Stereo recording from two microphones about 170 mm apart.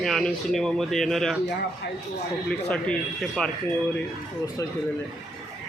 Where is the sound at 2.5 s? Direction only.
5° left (ahead or behind).